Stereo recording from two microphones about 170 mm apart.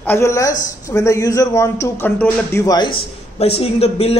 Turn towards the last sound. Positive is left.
turn(degrees=35)  # may be behind; listen again after turning